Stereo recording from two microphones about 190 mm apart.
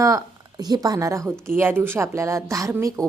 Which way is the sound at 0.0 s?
15° right (ahead or behind).